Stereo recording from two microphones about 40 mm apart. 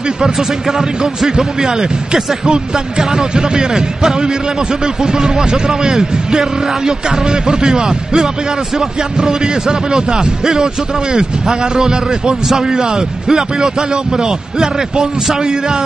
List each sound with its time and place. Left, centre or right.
0.2 s speech: centre